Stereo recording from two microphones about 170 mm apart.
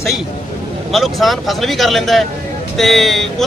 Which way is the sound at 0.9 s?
Centre (ahead or behind).